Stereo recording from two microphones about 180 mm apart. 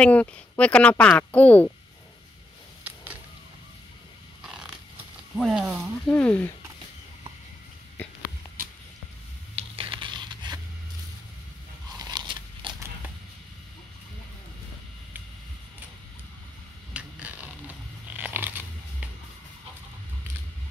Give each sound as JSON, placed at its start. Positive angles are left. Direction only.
{"t": 0.0, "sound": "a woman's voice", "side_deg": 5}
{"t": 2.8, "sound": "a sound", "side_deg": -10}
{"t": 4.4, "sound": "pig", "side_deg": -5}
{"t": 5.3, "sound": "speech", "side_deg": 0}
{"t": 6.0, "sound": "a woman's voice", "side_deg": 5}
{"t": 9.6, "sound": "a sound", "side_deg": -30}
{"t": 12.0, "sound": "biting", "side_deg": -25}
{"t": 16.9, "sound": "biting", "side_deg": -10}